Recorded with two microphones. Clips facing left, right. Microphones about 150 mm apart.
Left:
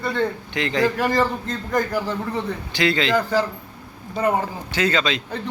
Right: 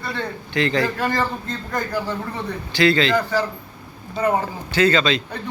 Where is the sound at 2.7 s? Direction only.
15° left (ahead or behind).